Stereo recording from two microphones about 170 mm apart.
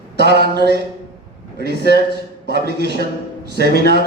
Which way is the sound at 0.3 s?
75° right (ahead or behind).